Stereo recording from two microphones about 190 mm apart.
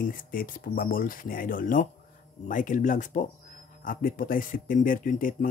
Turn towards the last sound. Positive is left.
turn(degrees=45)  # may be behind; listen again after turning